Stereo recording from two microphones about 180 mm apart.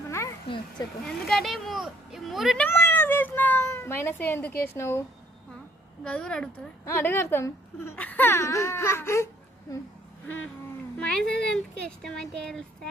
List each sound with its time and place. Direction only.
0.1 s a sound: 15° left (ahead or behind)
1.0 s speech: centre (ahead or behind)
2.6 s speech: 10° left (ahead or behind)
6.1 s speech: 5° left (ahead or behind)
10.9 s speech: 5° left (ahead or behind)